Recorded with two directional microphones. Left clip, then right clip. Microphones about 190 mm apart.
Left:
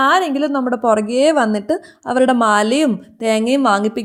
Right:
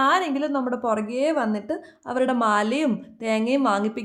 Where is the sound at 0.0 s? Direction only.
30° left (ahead or behind).